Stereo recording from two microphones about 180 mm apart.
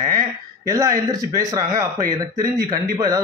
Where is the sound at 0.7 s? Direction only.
20° right (ahead or behind).